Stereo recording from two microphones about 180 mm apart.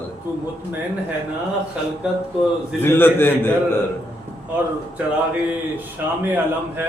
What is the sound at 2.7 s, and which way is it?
A man's voice, 10° left (ahead or behind).